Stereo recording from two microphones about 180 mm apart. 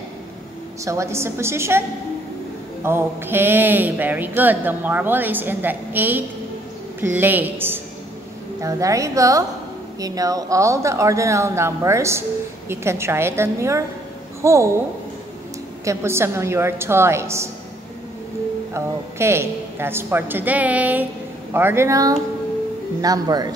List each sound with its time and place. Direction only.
0.8 s a woman's voice: 15° right (ahead or behind)
15.8 s speech: 15° right (ahead or behind)
18.7 s a man's voice: 15° right (ahead or behind)